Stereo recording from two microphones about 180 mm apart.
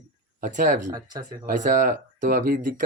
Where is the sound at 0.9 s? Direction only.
20° right (ahead or behind).